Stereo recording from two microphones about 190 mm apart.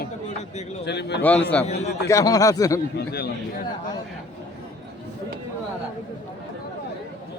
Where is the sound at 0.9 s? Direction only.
60° left (ahead or behind).